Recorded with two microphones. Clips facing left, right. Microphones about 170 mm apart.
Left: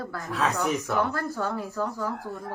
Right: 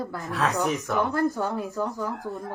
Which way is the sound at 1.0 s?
20° right (ahead or behind).